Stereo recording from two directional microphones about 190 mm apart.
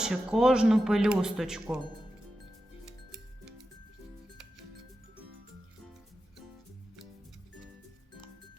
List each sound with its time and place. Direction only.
0.0 s speech: 5° right (ahead or behind)